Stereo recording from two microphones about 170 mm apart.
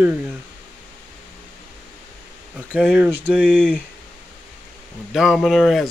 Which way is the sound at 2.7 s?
5° right (ahead or behind).